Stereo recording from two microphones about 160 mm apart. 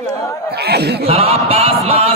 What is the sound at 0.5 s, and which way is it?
Snicker, 90° right.